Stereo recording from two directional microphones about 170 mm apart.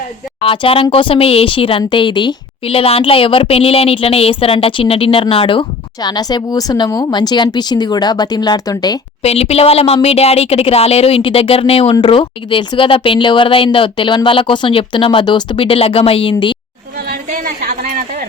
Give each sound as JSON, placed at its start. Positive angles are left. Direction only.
{"t": 0.4, "sound": "speech", "side_deg": 30}
{"t": 9.2, "sound": "speech", "side_deg": 35}
{"t": 17.1, "sound": "a sound", "side_deg": -60}